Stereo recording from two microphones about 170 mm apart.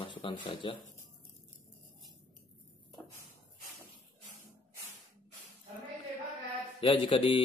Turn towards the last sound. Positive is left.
turn(degrees=30)  # may be behind; listen again after turning